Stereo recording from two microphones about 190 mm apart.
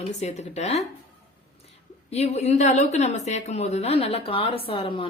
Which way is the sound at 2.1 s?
35° left (ahead or behind).